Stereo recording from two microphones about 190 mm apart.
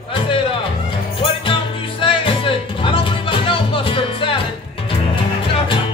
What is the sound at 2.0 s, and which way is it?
Music, 30° left (ahead or behind).